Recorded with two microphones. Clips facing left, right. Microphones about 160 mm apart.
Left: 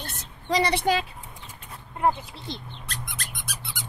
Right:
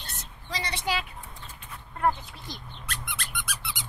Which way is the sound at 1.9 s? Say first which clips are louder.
Left 2 dB; 20° left (ahead or behind).